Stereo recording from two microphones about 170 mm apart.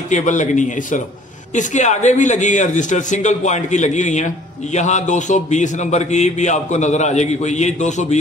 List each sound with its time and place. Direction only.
0.1 s a man's voice: 45° left (ahead or behind)